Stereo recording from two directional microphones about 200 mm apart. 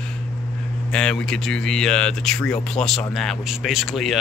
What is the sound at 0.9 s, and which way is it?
Speech, 5° left (ahead or behind).